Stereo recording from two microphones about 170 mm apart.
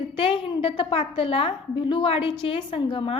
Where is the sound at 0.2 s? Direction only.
30° left (ahead or behind).